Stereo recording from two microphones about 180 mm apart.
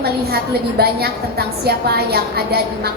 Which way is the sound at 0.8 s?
60° right (ahead or behind).